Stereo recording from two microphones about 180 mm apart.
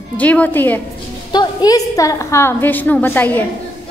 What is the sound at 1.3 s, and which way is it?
A woman's voice, 20° left (ahead or behind).